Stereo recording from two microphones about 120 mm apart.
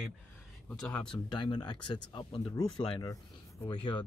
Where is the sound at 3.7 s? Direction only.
45° left (ahead or behind).